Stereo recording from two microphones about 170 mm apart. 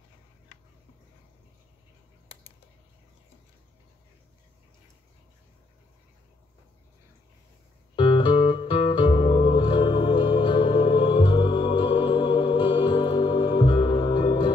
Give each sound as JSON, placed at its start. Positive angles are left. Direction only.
{"t": 7.9, "sound": "music", "side_deg": 30}